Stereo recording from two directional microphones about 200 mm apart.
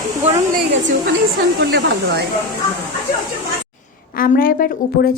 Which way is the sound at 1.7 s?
60° right (ahead or behind).